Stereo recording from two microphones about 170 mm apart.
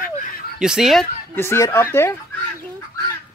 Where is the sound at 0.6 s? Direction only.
5° right (ahead or behind).